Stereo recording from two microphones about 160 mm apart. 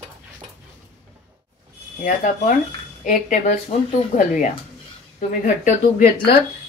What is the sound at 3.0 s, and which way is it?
Speech, 55° left (ahead or behind).